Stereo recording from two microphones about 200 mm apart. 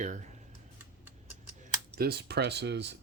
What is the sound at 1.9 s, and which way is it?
Speech, 50° right (ahead or behind).